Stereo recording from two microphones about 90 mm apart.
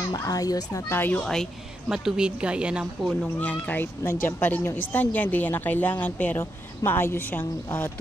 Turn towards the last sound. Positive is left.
turn(degrees=20)  # may be behind; listen again after turning